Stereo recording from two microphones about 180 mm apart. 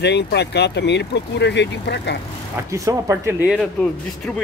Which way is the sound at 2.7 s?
15° right (ahead or behind).